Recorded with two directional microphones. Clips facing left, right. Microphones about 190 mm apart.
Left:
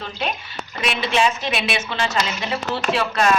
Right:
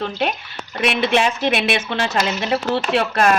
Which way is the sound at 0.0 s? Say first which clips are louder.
Right 5 dB; 55° right (ahead or behind).